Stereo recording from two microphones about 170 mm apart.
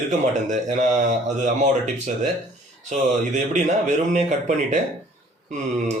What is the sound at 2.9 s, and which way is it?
Speech, 45° right (ahead or behind).